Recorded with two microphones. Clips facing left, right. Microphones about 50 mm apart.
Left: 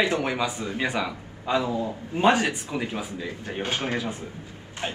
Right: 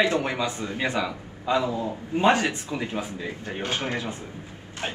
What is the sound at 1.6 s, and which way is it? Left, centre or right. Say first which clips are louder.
Speech: right 1 dB; right.